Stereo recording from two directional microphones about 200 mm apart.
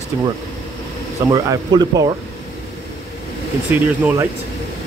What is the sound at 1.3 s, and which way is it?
Speech, 20° right (ahead or behind).